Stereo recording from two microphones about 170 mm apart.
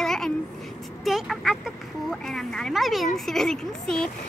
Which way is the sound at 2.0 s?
Centre (ahead or behind).